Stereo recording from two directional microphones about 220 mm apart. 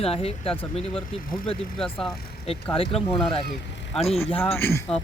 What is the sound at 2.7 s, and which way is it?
Speech, 25° left (ahead or behind).